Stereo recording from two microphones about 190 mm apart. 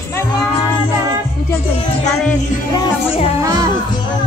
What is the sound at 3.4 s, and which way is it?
Music, 15° right (ahead or behind).